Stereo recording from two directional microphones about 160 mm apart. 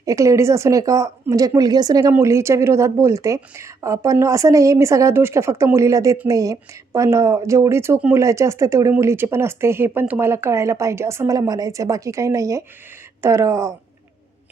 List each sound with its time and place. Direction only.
0.0 s a woman's voice: 20° right (ahead or behind)